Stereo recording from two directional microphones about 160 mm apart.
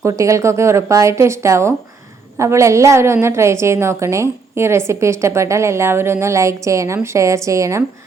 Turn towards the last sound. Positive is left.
turn(degrees=-20)  # may be behind; listen again after turning